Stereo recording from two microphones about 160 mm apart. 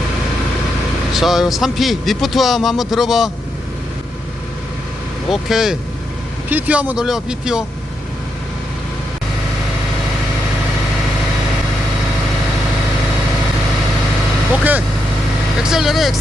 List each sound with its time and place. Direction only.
1.1 s a man's voice: centre (ahead or behind)
5.3 s a man's voice: centre (ahead or behind)
14.6 s a man's voice: 10° right (ahead or behind)